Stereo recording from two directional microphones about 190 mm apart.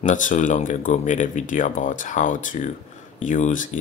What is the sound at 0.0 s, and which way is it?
Speech, 45° left (ahead or behind).